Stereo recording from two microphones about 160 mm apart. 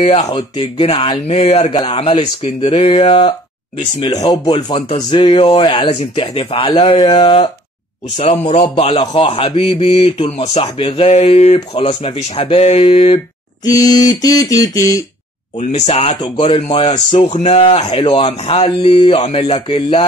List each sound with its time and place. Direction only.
0.0 s speech: 40° left (ahead or behind)
1.2 s speech: 40° left (ahead or behind)
4.3 s a sound: 25° left (ahead or behind)
4.8 s speech: 35° left (ahead or behind)
8.2 s a man's voice: 45° left (ahead or behind)
8.7 s speech: 30° left (ahead or behind)
13.7 s a sound: 20° left (ahead or behind)
15.7 s speech: 40° left (ahead or behind)